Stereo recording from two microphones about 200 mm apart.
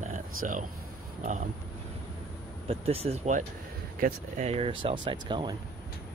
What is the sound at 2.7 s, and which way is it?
Speech, 30° right (ahead or behind).